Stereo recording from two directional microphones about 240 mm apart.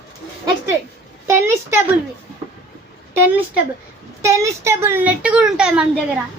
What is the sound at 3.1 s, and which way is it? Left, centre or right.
A woman's voice, centre.